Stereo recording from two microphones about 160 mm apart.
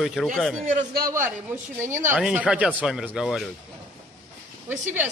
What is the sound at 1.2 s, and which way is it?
A woman's voice, 15° right (ahead or behind).